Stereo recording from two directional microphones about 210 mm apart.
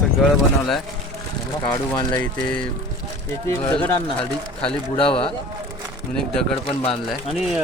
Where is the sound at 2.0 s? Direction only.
10° left (ahead or behind).